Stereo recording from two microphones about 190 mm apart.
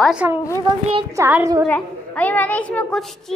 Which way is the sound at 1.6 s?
10° left (ahead or behind).